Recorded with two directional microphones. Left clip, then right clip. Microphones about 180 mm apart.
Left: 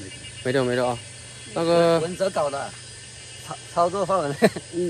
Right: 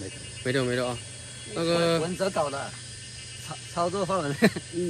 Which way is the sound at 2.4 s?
5° right (ahead or behind).